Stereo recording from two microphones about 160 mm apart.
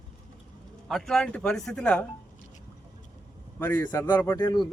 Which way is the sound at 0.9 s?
5° left (ahead or behind).